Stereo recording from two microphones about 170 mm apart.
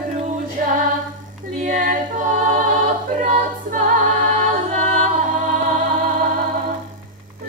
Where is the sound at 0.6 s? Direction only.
50° right (ahead or behind).